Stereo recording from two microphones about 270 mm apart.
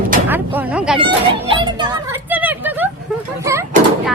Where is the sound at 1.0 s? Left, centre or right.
Centre.